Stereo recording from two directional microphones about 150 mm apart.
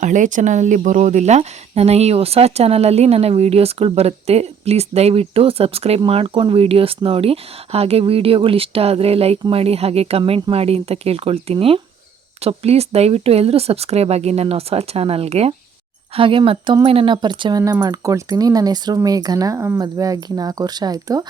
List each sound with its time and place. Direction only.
0.0 s speech: 55° right (ahead or behind); by 21.2 s 25° right (ahead or behind)